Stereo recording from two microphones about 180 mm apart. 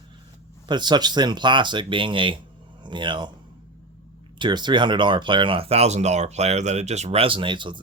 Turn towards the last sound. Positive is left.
turn(degrees=-25)  # may be behind; listen again after turning